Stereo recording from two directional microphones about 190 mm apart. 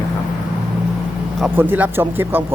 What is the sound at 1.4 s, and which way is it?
Speech, 10° right (ahead or behind).